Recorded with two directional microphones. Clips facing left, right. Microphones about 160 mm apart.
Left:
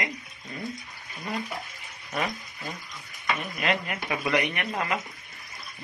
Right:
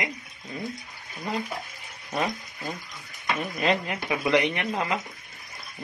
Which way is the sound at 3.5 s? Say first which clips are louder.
Right 5 dB; 30° right (ahead or behind).